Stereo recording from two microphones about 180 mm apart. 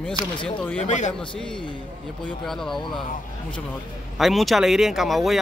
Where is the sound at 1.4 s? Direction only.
5° left (ahead or behind).